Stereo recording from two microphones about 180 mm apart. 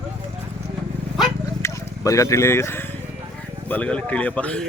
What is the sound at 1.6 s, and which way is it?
Speech, 15° left (ahead or behind).